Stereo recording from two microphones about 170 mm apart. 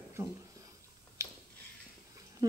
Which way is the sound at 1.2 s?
15° right (ahead or behind).